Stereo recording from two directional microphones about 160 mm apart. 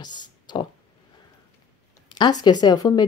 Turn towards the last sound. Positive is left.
turn(degrees=25)  # may be behind; listen again after turning